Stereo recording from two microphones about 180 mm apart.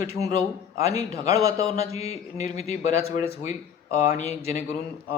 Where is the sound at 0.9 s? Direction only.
20° right (ahead or behind).